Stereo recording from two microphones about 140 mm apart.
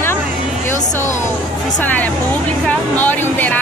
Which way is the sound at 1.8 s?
10° left (ahead or behind).